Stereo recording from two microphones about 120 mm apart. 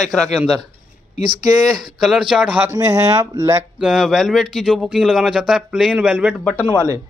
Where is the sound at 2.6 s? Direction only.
25° right (ahead or behind).